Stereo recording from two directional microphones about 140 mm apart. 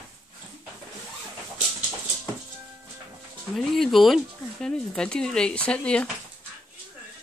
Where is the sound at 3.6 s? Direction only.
Centre (ahead or behind).